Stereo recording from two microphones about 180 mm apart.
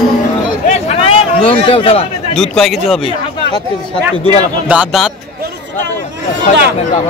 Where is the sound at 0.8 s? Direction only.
30° left (ahead or behind).